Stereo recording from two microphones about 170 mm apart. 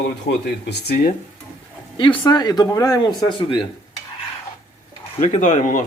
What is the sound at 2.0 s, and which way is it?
Speech, 25° left (ahead or behind).